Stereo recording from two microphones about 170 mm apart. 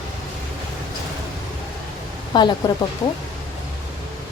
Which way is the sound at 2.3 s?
25° left (ahead or behind).